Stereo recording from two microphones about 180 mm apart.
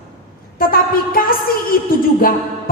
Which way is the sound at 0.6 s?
55° left (ahead or behind).